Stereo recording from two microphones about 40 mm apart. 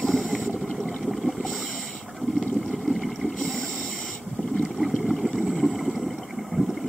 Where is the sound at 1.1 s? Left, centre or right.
Centre.